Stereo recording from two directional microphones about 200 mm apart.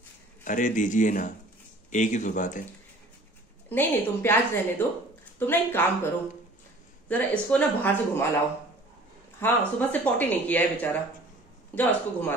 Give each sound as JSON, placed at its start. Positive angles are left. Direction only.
{"t": 0.4, "sound": "a man's voice", "side_deg": 40}
{"t": 3.6, "sound": "speech", "side_deg": 10}
{"t": 7.1, "sound": "speech", "side_deg": 5}
{"t": 9.4, "sound": "speech", "side_deg": 10}